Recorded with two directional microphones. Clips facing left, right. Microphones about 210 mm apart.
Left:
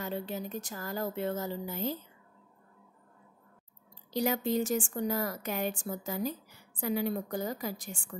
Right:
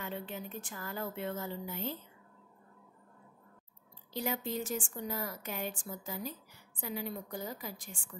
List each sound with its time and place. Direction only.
0.0 s speech: 40° left (ahead or behind)
4.1 s a woman's voice: 85° left